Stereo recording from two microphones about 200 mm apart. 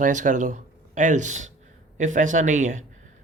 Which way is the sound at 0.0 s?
40° right (ahead or behind).